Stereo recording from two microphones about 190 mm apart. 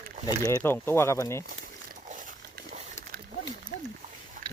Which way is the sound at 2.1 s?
45° right (ahead or behind).